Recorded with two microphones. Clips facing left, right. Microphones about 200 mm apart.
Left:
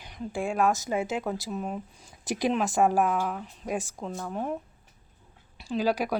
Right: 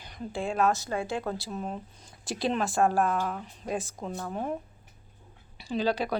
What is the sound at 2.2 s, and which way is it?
Speech, 15° left (ahead or behind).